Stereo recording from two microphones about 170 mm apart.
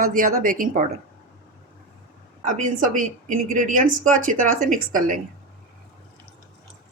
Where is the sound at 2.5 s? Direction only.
50° right (ahead or behind).